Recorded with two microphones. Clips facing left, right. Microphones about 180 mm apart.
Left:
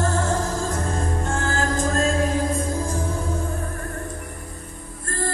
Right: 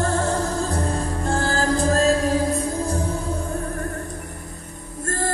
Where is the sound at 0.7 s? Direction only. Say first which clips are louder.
Right 1 dB; 35° right (ahead or behind).